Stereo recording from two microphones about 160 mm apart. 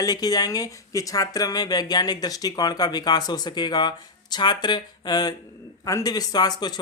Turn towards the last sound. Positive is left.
turn(degrees=25)  # may be behind; listen again after turning